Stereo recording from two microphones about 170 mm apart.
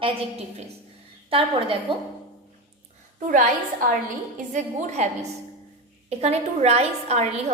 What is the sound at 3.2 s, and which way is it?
Speech, 50° right (ahead or behind).